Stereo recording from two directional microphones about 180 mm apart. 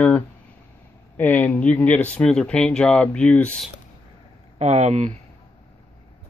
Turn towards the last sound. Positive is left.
turn(degrees=-40)  # may be behind; listen again after turning